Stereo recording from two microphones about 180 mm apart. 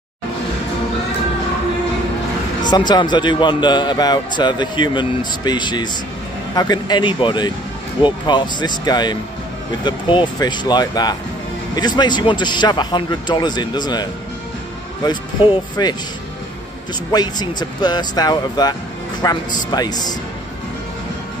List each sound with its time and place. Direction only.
2.6 s a man's voice: 25° left (ahead or behind)
15.0 s a man's voice: 25° left (ahead or behind)
17.1 s a man's voice: 25° left (ahead or behind)